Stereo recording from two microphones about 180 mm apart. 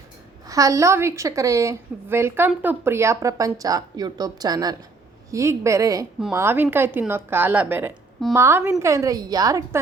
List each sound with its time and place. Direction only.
0.4 s a woman's voice: 20° right (ahead or behind)